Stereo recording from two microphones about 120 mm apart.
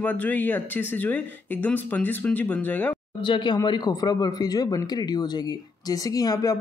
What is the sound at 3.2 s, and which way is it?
Speech, 40° left (ahead or behind).